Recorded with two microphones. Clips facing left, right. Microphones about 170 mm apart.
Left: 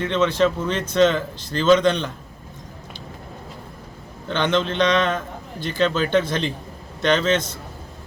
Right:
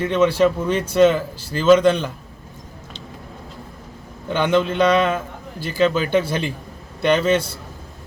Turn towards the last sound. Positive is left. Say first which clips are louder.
# right 2 dB
turn(degrees=-10)  # may be behind; listen again after turning